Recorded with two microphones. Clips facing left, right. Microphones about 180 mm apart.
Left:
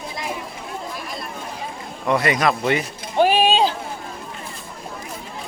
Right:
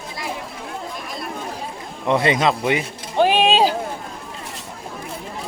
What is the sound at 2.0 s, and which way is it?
Speech, 25° right (ahead or behind).